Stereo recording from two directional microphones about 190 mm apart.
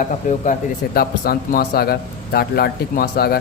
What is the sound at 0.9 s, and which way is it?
A man's voice, 50° left (ahead or behind).